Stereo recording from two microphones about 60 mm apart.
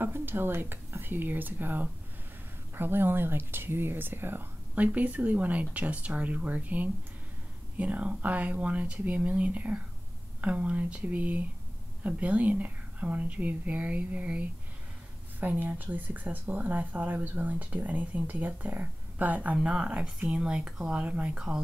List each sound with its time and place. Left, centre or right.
0.0 s speech: right
4.7 s speech: right
19.5 s speech: centre